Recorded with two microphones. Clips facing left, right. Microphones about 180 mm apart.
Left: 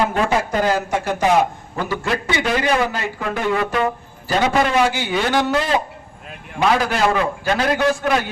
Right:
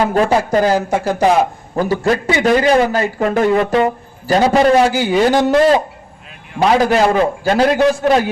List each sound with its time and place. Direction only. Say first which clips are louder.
0.1 s a man's voice: right 6 dB; 35° right (ahead or behind)